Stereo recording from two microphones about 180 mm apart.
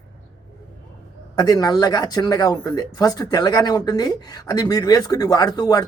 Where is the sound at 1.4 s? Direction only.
20° left (ahead or behind).